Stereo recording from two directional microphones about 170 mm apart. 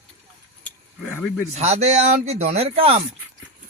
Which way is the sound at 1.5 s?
40° right (ahead or behind).